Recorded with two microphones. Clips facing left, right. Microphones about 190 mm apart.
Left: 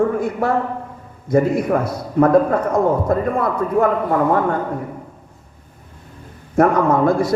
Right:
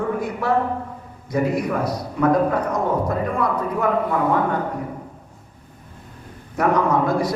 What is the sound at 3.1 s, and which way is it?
Speech, 50° left (ahead or behind).